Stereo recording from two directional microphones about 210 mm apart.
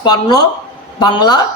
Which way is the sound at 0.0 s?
20° left (ahead or behind).